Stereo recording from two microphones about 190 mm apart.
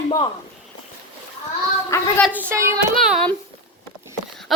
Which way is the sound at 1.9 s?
15° left (ahead or behind).